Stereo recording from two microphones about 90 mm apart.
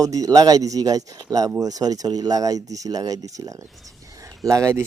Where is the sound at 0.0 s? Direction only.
40° right (ahead or behind).